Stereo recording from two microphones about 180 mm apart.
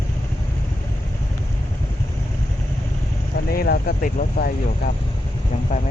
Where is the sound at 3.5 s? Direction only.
60° left (ahead or behind).